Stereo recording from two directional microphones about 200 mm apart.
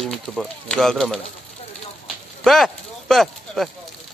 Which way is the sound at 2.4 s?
Centre (ahead or behind).